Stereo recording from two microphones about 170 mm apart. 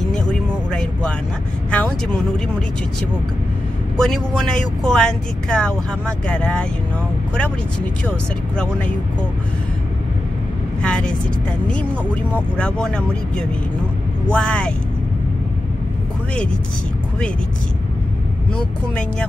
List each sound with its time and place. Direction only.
0.1 s a sound: 5° left (ahead or behind)
1.7 s speech: 5° left (ahead or behind)
3.9 s speech: centre (ahead or behind)
8.5 s speech: 5° left (ahead or behind)
10.8 s a woman's voice: 5° left (ahead or behind)
18.6 s speech: 5° left (ahead or behind)